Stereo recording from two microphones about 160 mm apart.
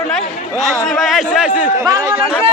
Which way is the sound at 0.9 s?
Centre (ahead or behind).